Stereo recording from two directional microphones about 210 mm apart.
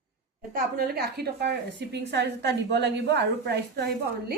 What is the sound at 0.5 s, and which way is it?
A woman's voice, 45° right (ahead or behind).